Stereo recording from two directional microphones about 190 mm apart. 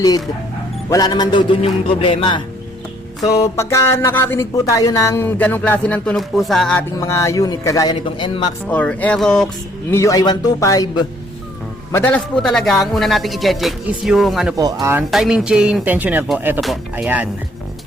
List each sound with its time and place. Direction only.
0.9 s speech: 20° left (ahead or behind)
3.4 s speech: 15° left (ahead or behind)
6.9 s speech: 15° left (ahead or behind)
8.7 s speech: 10° left (ahead or behind)
9.9 s speech: 15° left (ahead or behind); by 14.5 s centre (ahead or behind)
14.5 s speech: 15° right (ahead or behind)
15.1 s speech: centre (ahead or behind)